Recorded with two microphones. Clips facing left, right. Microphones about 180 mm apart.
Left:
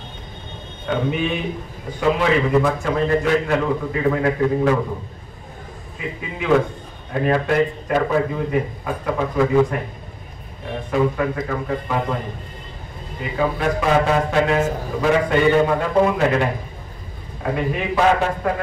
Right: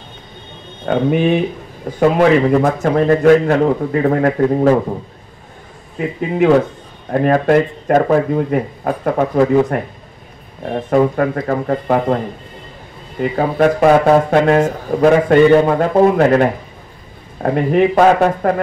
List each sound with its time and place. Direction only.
0.8 s speech: 55° right (ahead or behind)
5.9 s speech: 50° right (ahead or behind)
13.2 s speech: 50° right (ahead or behind)